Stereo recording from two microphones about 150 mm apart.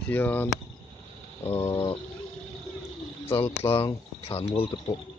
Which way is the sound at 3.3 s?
40° left (ahead or behind).